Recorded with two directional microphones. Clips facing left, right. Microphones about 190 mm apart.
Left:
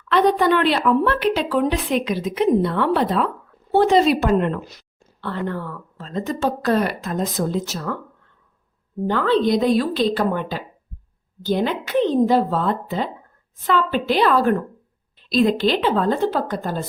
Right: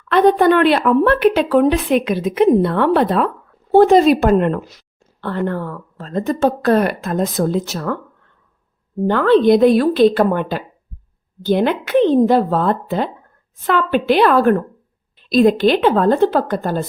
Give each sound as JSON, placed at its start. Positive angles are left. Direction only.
{"t": 0.1, "sound": "a woman's voice", "side_deg": -55}
{"t": 9.0, "sound": "a woman's voice", "side_deg": -60}